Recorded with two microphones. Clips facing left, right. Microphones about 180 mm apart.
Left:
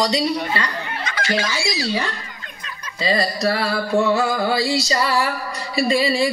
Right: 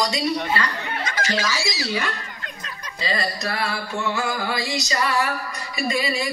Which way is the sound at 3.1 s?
35° left (ahead or behind).